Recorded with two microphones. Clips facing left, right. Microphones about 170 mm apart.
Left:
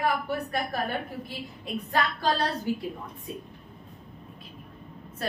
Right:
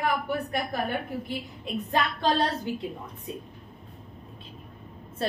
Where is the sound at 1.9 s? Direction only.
20° right (ahead or behind).